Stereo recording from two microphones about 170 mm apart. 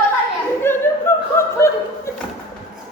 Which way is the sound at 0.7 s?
15° left (ahead or behind).